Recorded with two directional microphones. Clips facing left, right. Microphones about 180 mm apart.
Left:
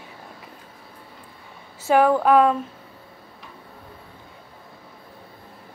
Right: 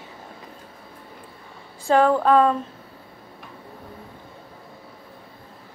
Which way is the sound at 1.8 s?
10° left (ahead or behind).